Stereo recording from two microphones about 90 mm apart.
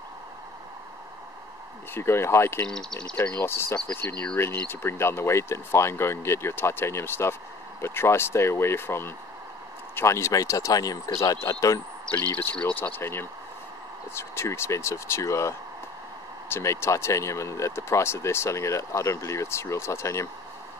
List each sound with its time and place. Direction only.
2.0 s speech: 30° left (ahead or behind)
2.6 s speech: 10° left (ahead or behind)
3.2 s speech: 25° left (ahead or behind)
12.5 s speech: 15° left (ahead or behind); by 20.2 s 35° left (ahead or behind)